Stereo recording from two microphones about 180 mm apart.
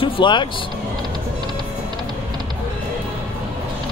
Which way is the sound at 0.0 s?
25° left (ahead or behind).